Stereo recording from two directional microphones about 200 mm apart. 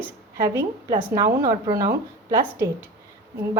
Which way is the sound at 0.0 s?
15° right (ahead or behind).